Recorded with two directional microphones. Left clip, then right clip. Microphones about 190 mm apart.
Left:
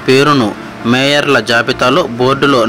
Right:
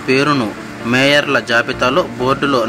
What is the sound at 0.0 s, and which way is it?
Speech, 25° left (ahead or behind).